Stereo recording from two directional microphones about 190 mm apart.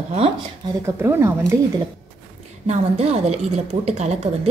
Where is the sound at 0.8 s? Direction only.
15° right (ahead or behind).